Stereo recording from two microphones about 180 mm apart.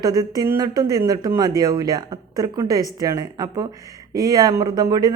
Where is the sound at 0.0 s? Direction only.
20° right (ahead or behind).